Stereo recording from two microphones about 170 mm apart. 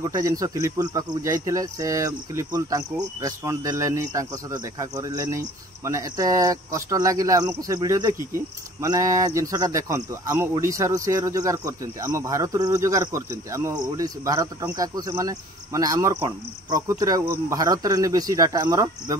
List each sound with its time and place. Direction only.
0.0 s a man's voice: 20° right (ahead or behind)